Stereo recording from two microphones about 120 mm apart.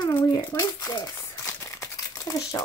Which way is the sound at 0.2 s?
40° left (ahead or behind).